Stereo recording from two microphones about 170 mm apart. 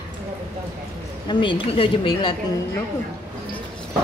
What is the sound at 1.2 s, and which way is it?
A woman's voice, 30° left (ahead or behind).